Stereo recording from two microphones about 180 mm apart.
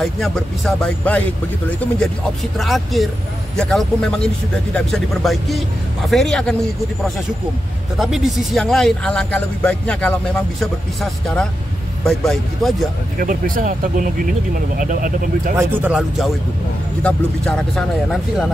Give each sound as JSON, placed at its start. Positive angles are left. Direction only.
{"t": 0.0, "sound": "speech", "side_deg": 0}
{"t": 2.6, "sound": "speech", "side_deg": 0}
{"t": 8.0, "sound": "speech", "side_deg": 0}
{"t": 13.2, "sound": "speech", "side_deg": -50}
{"t": 15.5, "sound": "speech", "side_deg": -5}